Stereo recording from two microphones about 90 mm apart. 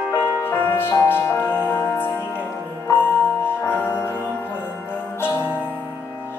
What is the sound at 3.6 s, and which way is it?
Music, 25° left (ahead or behind).